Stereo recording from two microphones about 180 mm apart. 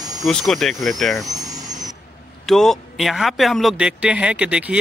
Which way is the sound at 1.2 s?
20° right (ahead or behind).